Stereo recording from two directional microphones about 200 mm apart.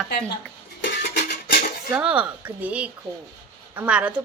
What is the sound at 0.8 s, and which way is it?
Music, 55° left (ahead or behind).